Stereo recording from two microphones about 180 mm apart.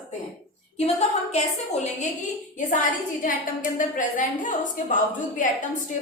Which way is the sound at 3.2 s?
45° left (ahead or behind).